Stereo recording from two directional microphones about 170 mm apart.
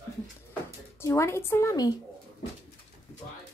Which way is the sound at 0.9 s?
15° left (ahead or behind).